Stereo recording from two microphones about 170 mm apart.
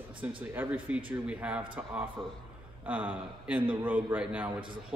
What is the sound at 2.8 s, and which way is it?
A man's voice, 10° right (ahead or behind).